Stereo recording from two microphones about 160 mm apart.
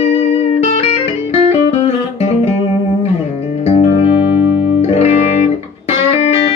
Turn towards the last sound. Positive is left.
turn(degrees=40)  # may be behind; listen again after turning